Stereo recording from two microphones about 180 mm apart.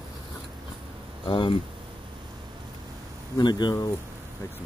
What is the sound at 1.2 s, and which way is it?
Speech, 25° left (ahead or behind).